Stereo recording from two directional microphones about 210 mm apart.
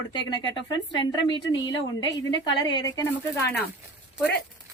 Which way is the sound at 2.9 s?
15° left (ahead or behind).